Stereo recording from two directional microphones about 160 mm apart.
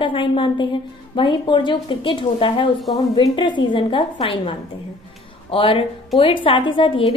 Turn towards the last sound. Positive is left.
turn(degrees=30)  # may be behind; listen again after turning